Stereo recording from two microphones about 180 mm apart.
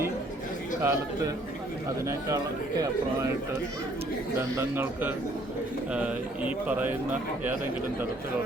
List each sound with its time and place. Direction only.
0.8 s a man's voice: 15° right (ahead or behind)